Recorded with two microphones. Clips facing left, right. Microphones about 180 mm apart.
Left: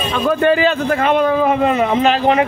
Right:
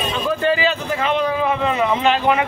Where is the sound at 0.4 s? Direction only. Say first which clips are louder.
Left 6 dB; 55° left (ahead or behind).